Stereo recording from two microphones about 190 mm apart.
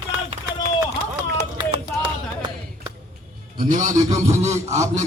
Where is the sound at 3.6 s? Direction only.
45° right (ahead or behind).